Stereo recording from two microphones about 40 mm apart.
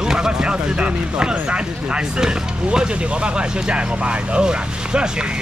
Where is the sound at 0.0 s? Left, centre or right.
Centre.